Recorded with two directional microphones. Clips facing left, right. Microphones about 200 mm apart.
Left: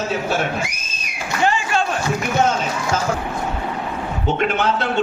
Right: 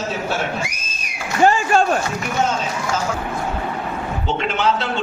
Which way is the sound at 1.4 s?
45° right (ahead or behind).